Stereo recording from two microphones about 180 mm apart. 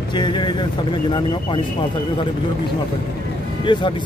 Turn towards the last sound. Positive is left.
turn(degrees=25)  # may be behind; listen again after turning